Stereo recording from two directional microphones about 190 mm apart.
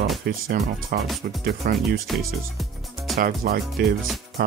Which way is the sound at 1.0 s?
Centre (ahead or behind).